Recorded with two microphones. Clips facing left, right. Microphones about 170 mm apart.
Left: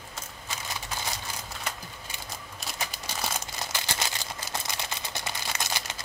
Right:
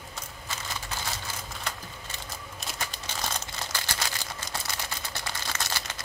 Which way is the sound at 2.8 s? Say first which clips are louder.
Left 1 dB; 10° left (ahead or behind).